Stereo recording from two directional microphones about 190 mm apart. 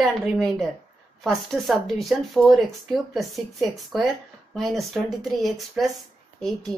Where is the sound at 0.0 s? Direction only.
Centre (ahead or behind).